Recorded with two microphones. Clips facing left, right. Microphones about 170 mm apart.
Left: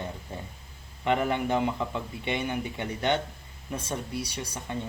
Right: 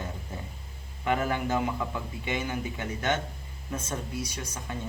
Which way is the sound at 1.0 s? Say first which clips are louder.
Left 2 dB; 20° left (ahead or behind).